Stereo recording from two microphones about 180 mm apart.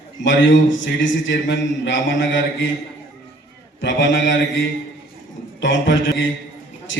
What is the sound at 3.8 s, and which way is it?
Speech, 90° left.